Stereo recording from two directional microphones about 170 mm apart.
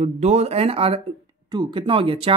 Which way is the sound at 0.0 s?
40° right (ahead or behind).